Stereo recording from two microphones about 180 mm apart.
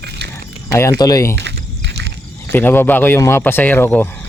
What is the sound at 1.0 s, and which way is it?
Speech, 20° left (ahead or behind).